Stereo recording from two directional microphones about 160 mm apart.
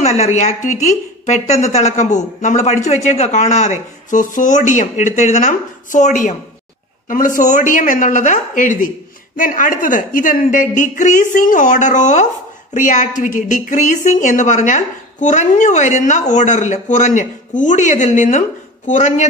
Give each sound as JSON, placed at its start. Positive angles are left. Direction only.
{"t": 0.0, "sound": "a woman's voice", "side_deg": 45}